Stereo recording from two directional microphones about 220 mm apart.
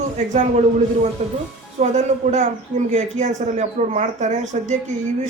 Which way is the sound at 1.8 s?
30° right (ahead or behind).